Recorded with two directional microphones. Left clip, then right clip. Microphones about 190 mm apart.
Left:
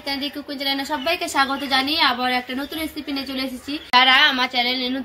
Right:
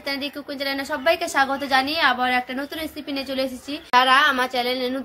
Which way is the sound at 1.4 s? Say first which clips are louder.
Even; 10° right (ahead or behind).